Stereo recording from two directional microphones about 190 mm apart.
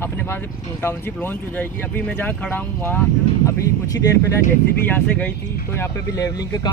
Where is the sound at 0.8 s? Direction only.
10° left (ahead or behind).